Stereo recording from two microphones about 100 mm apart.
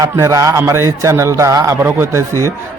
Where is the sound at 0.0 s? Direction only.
30° right (ahead or behind).